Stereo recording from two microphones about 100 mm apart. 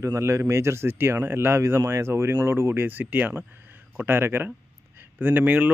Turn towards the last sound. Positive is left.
turn(degrees=-15)  # may be behind; listen again after turning